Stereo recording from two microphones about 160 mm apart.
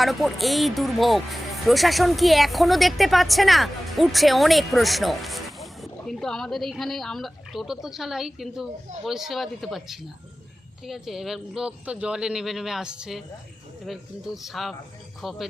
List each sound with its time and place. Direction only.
0.0 s speech: centre (ahead or behind)